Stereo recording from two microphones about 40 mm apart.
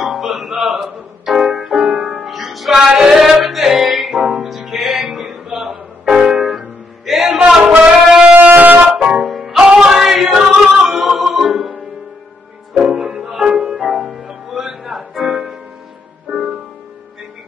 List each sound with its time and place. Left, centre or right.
0.0 s music: centre
0.8 s keyboard: centre
1.7 s music: centre
2.0 s music: right
2.2 s music: centre
7.3 s a sound: centre
7.8 s shofar: centre
8.4 s shofar: right
9.1 s music: centre
13.0 s music: centre